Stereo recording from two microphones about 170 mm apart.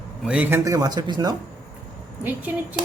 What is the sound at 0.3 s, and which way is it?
A man's voice, 10° right (ahead or behind).